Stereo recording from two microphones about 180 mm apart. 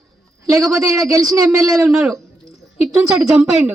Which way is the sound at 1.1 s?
20° right (ahead or behind).